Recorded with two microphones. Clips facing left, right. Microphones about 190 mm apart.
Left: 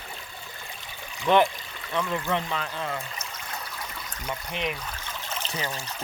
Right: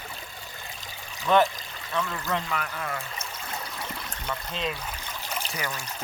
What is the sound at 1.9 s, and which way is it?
Speech, 20° left (ahead or behind).